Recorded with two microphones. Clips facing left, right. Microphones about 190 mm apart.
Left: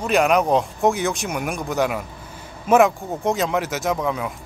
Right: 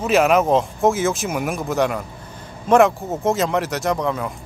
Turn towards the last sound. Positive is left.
turn(degrees=0)  # may be behind; listen again after turning